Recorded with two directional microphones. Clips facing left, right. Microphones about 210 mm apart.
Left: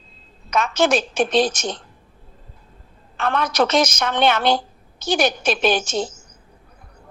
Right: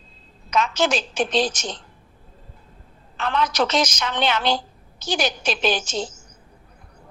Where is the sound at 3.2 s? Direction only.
55° left (ahead or behind).